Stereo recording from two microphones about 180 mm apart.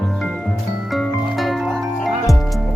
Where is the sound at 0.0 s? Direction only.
5° left (ahead or behind).